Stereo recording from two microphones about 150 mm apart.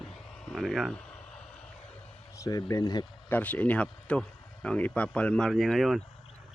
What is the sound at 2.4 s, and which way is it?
Speech, 25° left (ahead or behind).